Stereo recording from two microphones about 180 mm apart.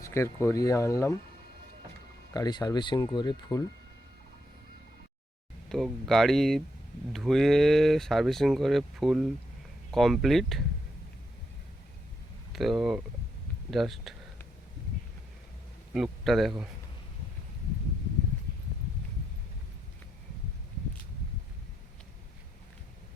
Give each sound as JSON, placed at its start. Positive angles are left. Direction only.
{"t": 0.0, "sound": "speech", "side_deg": 15}
{"t": 2.3, "sound": "speech", "side_deg": 20}
{"t": 5.6, "sound": "speech", "side_deg": 0}
{"t": 12.5, "sound": "speech", "side_deg": 0}
{"t": 15.9, "sound": "a man's voice", "side_deg": 0}